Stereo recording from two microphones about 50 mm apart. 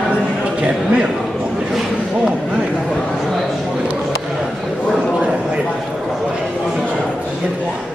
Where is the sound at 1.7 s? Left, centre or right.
Centre.